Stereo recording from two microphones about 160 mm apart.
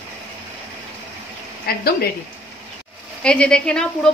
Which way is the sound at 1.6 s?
75° left (ahead or behind).